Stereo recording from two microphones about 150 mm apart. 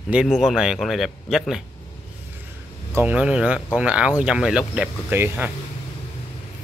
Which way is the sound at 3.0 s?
10° right (ahead or behind).